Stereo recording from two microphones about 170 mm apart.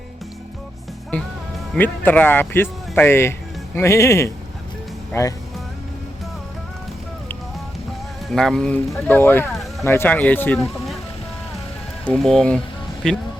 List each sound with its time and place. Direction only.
1.7 s speech: 10° left (ahead or behind)
8.3 s speech: centre (ahead or behind)
12.0 s speech: 5° left (ahead or behind)